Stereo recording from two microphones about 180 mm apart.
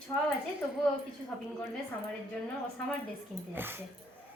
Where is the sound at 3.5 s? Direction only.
10° right (ahead or behind).